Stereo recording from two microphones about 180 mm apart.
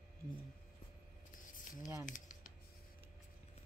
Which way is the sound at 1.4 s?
45° left (ahead or behind).